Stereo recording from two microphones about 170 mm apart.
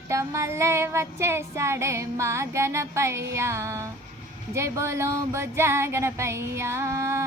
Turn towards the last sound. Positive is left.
turn(degrees=-15)  # may be behind; listen again after turning